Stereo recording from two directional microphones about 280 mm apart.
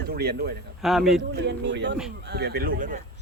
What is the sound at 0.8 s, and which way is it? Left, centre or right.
Speech, centre.